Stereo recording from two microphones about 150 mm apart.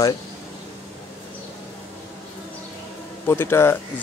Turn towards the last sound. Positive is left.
turn(degrees=15)  # may be behind; listen again after turning